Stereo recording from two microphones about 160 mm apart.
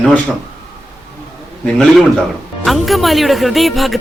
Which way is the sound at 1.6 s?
5° left (ahead or behind).